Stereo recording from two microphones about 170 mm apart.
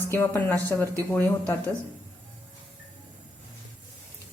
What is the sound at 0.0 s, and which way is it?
Speech, 15° left (ahead or behind).